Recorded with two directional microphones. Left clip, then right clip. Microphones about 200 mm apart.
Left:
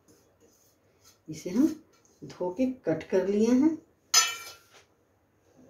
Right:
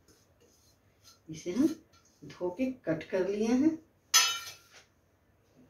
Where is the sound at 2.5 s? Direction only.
60° left (ahead or behind).